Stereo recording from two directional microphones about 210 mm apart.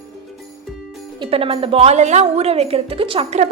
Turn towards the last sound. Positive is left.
turn(degrees=-30)  # may be behind; listen again after turning